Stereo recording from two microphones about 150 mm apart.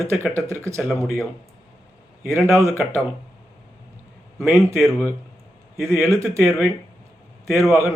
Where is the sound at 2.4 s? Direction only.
20° right (ahead or behind).